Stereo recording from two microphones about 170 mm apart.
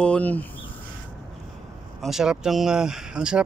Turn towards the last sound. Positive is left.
turn(degrees=-5)  # may be behind; listen again after turning